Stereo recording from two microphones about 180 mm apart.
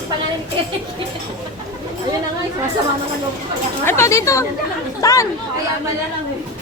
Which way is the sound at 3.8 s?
15° left (ahead or behind).